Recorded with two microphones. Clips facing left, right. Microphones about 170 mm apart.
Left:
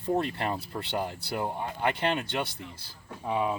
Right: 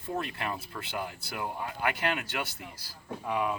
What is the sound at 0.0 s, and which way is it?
Speech, 35° left (ahead or behind).